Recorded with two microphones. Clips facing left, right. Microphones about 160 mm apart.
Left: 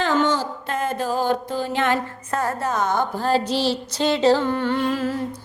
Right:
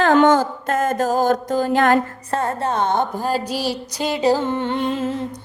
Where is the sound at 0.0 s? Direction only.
50° right (ahead or behind).